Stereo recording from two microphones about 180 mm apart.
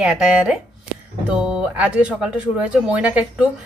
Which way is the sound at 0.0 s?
Centre (ahead or behind).